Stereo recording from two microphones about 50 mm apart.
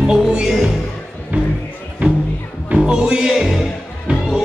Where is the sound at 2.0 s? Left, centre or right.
Right.